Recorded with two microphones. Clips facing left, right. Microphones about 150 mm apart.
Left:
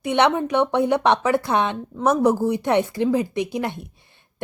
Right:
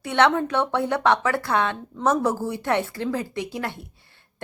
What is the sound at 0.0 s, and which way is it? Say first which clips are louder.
A woman's voice: left 1 dB; 15° left (ahead or behind).